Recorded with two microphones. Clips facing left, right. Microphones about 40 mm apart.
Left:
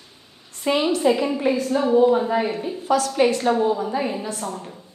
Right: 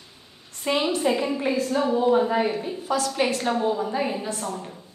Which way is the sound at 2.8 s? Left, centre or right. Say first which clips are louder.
Left 4 dB; left.